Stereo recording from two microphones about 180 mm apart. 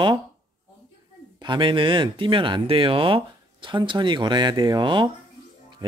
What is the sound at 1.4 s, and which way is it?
Speech, 25° right (ahead or behind).